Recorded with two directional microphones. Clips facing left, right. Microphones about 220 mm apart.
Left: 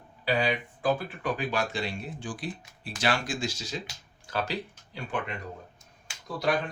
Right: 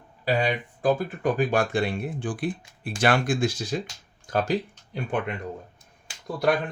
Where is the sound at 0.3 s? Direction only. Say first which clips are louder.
Right 3 dB; 45° right (ahead or behind).